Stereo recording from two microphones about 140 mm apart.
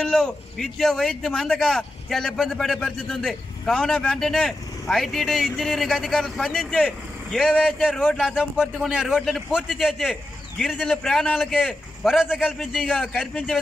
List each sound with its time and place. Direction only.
0.0 s speech: 5° left (ahead or behind)